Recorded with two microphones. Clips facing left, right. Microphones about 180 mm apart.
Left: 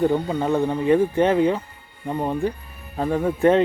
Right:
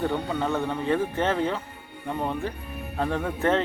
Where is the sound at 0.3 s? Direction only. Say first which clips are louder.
Left 5 dB; 15° left (ahead or behind).